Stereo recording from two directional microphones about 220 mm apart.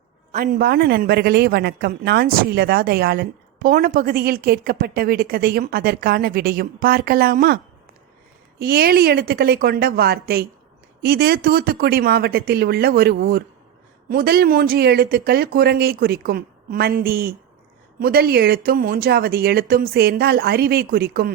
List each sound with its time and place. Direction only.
0.3 s a woman's voice: 40° right (ahead or behind)